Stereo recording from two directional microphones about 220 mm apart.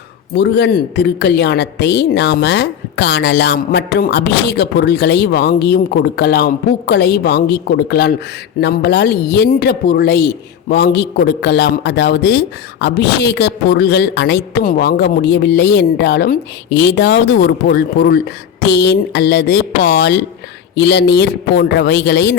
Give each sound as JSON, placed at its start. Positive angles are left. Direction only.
{"t": 0.3, "sound": "speech", "side_deg": 50}